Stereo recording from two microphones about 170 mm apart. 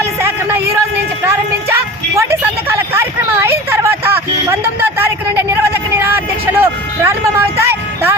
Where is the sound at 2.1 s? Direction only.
15° right (ahead or behind).